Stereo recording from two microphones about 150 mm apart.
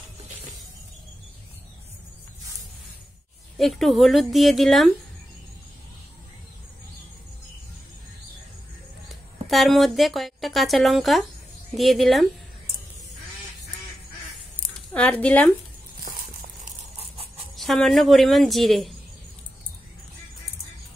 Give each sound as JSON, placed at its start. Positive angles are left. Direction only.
{"t": 3.5, "sound": "a woman's voice", "side_deg": 0}
{"t": 9.1, "sound": "a woman's voice", "side_deg": 0}
{"t": 15.0, "sound": "speech", "side_deg": 10}
{"t": 17.6, "sound": "a woman's voice", "side_deg": 0}